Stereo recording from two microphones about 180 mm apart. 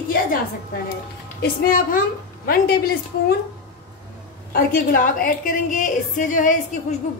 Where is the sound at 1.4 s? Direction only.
50° left (ahead or behind).